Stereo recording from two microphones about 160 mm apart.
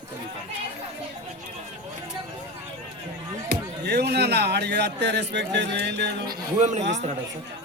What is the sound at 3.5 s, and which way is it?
Speech, 90° right.